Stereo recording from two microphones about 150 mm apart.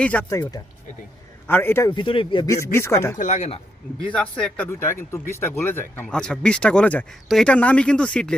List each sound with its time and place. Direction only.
0.0 s speech: 10° left (ahead or behind)
0.3 s speech: 20° left (ahead or behind)
1.9 s speech: 30° left (ahead or behind)
2.7 s speech: 15° left (ahead or behind)
3.2 s speech: 50° left (ahead or behind)
4.1 s speech: 5° left (ahead or behind)